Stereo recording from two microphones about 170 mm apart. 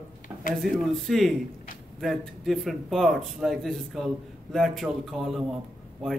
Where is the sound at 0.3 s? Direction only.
10° right (ahead or behind).